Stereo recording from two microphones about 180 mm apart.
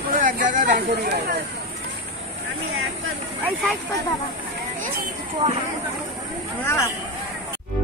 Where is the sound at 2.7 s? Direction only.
90° right.